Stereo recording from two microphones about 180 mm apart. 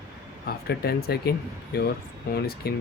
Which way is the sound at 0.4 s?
60° left (ahead or behind).